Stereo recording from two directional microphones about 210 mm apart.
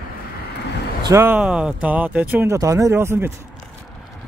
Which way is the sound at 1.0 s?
10° right (ahead or behind).